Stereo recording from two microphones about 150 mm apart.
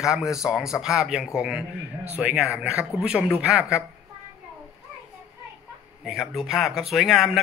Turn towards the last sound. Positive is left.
turn(degrees=0)  # may be behind; listen again after turning